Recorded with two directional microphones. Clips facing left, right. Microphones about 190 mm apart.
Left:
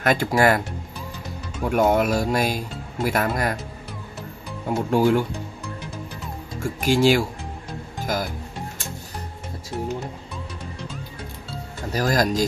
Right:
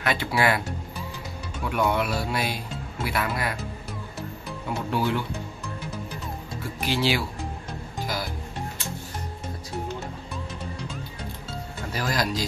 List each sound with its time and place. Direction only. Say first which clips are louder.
0.0 s speech: left 5 dB; 45° left (ahead or behind)
1.6 s speech: left 6 dB; 45° left (ahead or behind)
4.6 s speech: left 7 dB; 45° left (ahead or behind)
6.6 s speech: left 8 dB; 45° left (ahead or behind)
11.9 s speech: left 6 dB; 45° left (ahead or behind)